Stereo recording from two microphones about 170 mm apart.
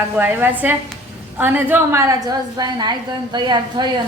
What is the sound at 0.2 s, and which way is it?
A woman's voice, 10° right (ahead or behind).